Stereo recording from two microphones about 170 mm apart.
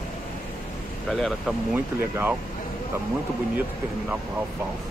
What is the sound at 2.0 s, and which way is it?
Speech, 10° right (ahead or behind).